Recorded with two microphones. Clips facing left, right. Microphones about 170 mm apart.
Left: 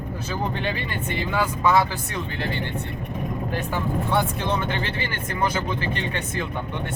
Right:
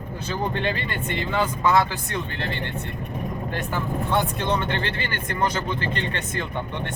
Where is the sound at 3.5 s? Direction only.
10° left (ahead or behind).